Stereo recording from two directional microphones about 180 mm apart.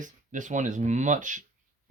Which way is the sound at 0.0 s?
45° right (ahead or behind).